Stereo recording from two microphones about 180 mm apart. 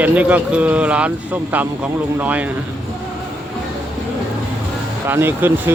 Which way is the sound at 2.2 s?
10° right (ahead or behind).